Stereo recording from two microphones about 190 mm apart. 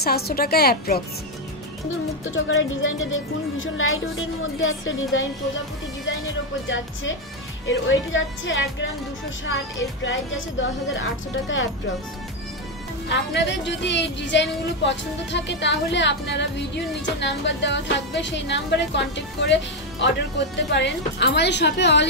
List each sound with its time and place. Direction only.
0.0 s a woman's voice: 55° left (ahead or behind)
2.3 s speech: 90° left
6.7 s music: 80° left
7.6 s speech: 90° left
10.0 s music: 80° left
13.1 s speech: 65° left (ahead or behind)